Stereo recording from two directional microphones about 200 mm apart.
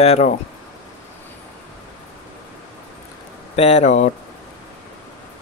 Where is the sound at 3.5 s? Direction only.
30° left (ahead or behind).